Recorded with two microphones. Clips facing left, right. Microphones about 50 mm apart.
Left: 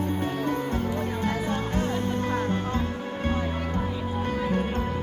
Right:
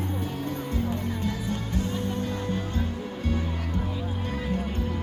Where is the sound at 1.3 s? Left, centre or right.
Left.